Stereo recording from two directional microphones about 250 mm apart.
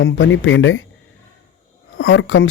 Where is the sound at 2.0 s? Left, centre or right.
Left.